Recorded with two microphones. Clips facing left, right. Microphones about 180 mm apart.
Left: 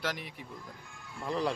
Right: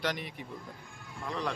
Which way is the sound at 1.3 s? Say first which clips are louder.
Left 4 dB; 30° left (ahead or behind).